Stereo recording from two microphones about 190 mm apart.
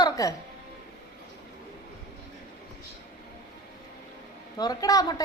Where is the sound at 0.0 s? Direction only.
20° left (ahead or behind).